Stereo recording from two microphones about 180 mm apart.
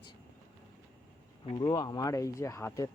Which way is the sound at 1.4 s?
25° left (ahead or behind).